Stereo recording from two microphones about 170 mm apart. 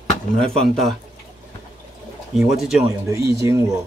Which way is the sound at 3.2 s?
15° right (ahead or behind).